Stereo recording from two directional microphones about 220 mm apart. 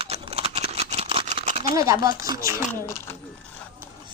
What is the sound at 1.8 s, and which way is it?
Speech, 15° right (ahead or behind).